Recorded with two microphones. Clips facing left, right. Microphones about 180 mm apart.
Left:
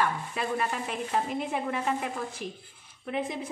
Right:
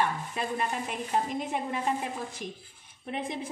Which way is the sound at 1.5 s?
20° right (ahead or behind).